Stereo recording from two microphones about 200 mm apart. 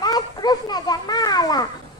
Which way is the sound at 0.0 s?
20° left (ahead or behind).